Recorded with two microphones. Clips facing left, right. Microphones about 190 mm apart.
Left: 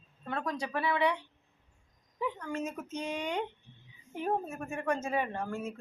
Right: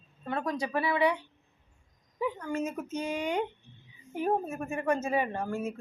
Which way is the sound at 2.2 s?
5° right (ahead or behind).